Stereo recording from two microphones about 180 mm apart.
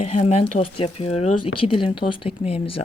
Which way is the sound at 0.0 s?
35° left (ahead or behind).